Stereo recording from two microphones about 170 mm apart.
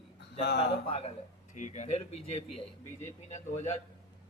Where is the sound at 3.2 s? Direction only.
40° left (ahead or behind).